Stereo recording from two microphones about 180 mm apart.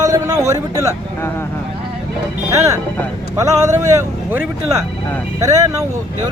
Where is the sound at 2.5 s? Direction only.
15° right (ahead or behind).